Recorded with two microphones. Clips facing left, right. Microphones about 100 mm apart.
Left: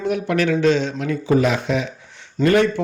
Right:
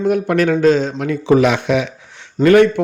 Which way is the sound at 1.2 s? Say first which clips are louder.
Right 5 dB; 80° right.